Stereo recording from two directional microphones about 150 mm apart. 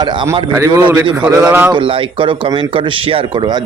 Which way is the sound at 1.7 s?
35° right (ahead or behind).